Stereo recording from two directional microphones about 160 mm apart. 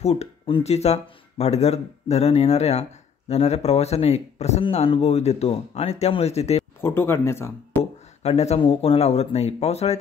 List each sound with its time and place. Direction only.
0.0 s speech: 40° left (ahead or behind)
6.8 s speech: 15° left (ahead or behind)
7.8 s speech: 40° left (ahead or behind)